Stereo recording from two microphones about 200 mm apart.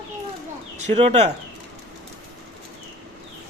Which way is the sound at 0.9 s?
30° right (ahead or behind).